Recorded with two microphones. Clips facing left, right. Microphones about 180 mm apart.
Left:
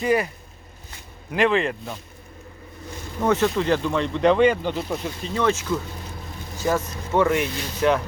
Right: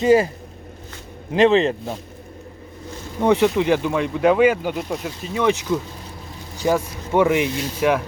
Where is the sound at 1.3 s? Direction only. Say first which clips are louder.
Right 5 dB; 25° right (ahead or behind).